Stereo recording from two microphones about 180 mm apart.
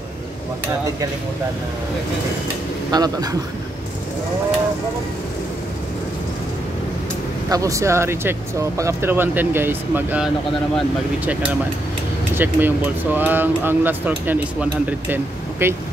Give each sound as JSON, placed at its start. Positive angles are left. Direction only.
{"t": 2.9, "sound": "a man's voice", "side_deg": -20}
{"t": 7.4, "sound": "speech", "side_deg": -20}
{"t": 12.4, "sound": "speech", "side_deg": -10}